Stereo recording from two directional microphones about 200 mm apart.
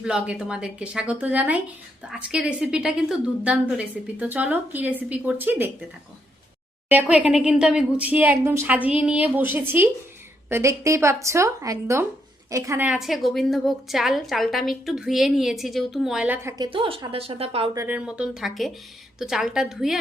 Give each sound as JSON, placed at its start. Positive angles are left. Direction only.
{"t": 0.0, "sound": "a woman's voice", "side_deg": -5}
{"t": 6.8, "sound": "a woman's voice", "side_deg": -10}
{"t": 16.6, "sound": "a woman's voice", "side_deg": -25}
{"t": 17.7, "sound": "a woman's voice", "side_deg": -10}